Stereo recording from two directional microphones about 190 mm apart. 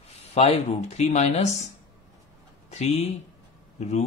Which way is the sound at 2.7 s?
35° left (ahead or behind).